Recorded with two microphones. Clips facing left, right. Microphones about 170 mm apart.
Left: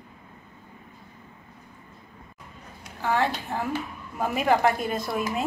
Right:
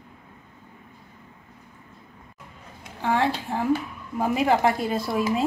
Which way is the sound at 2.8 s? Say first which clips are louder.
Right 2 dB; 25° right (ahead or behind).